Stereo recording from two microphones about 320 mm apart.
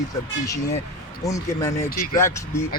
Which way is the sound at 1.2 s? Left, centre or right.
Centre.